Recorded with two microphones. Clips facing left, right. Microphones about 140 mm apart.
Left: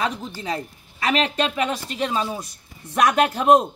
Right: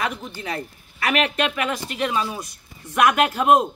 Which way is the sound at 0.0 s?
30° left (ahead or behind).